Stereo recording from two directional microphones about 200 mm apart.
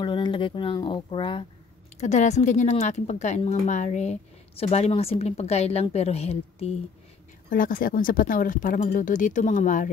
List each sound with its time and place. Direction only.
0.0 s speech: 25° left (ahead or behind)
2.0 s a woman's voice: 35° left (ahead or behind)
7.4 s a woman's voice: 45° left (ahead or behind)